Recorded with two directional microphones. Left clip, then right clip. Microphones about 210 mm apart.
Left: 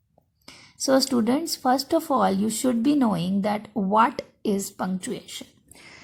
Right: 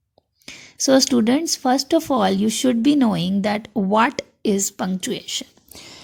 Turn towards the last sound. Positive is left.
turn(degrees=-30)  # may be behind; listen again after turning